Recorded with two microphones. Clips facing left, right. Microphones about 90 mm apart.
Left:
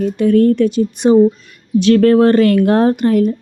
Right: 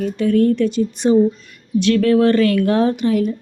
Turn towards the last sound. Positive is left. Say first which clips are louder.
# left 4 dB
turn(degrees=50)  # may be behind; listen again after turning